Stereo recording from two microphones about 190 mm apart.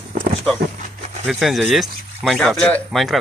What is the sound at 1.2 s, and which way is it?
Speech, centre (ahead or behind).